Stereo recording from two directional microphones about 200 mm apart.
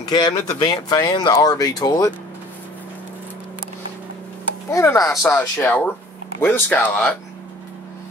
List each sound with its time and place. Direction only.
0.1 s speech: 20° left (ahead or behind)
4.6 s speech: 15° left (ahead or behind)